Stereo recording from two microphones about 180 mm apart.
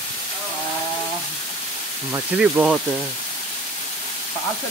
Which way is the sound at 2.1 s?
5° right (ahead or behind).